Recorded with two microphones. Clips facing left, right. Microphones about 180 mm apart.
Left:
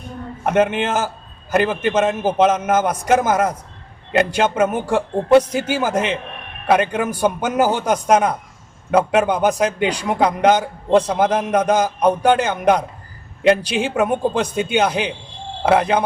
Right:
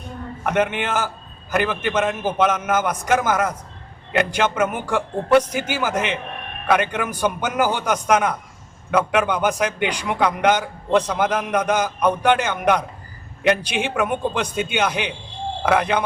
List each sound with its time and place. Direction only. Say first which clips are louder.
0.4 s a man's voice: left 4 dB; 30° left (ahead or behind)